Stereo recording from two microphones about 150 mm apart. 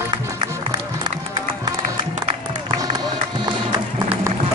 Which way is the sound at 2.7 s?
30° right (ahead or behind).